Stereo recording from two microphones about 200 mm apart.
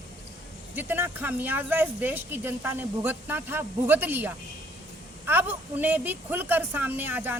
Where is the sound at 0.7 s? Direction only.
10° right (ahead or behind).